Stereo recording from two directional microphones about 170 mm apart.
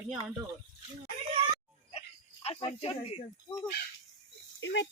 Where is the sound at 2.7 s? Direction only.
35° left (ahead or behind).